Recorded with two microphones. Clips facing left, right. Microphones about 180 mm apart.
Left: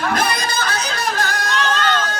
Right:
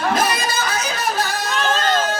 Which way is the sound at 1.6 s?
40° right (ahead or behind).